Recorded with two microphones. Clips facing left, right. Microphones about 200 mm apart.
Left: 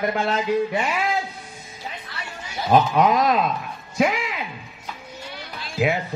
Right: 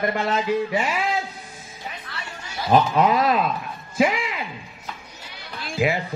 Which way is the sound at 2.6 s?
5° left (ahead or behind).